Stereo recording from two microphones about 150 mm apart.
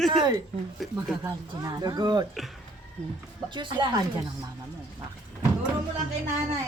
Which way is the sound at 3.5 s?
30° right (ahead or behind).